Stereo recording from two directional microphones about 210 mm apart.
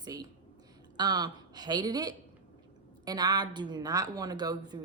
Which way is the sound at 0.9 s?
20° right (ahead or behind).